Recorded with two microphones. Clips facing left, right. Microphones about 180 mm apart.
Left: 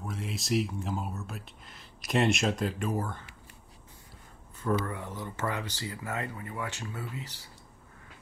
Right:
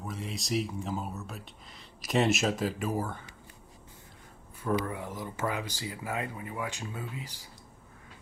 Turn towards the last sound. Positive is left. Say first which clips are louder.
# even
turn(degrees=-15)  # may be behind; listen again after turning